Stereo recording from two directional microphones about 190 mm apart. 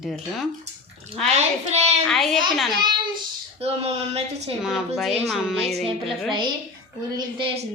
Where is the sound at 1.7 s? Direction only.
35° right (ahead or behind).